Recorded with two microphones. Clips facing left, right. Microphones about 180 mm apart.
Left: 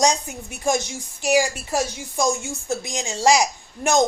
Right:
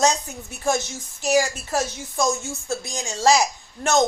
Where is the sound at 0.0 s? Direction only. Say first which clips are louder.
Even; 15° left (ahead or behind).